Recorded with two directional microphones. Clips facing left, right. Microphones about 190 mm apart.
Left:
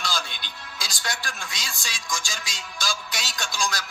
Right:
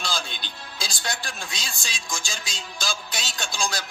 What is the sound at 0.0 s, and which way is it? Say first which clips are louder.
Music: even; 30° right (ahead or behind).